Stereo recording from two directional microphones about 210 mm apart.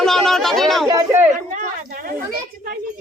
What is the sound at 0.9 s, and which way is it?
Speech, 15° right (ahead or behind).